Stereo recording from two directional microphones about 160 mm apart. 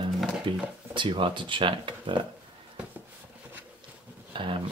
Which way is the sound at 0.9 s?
30° right (ahead or behind).